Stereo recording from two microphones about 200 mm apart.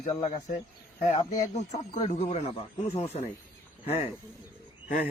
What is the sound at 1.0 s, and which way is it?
Speech, 35° left (ahead or behind).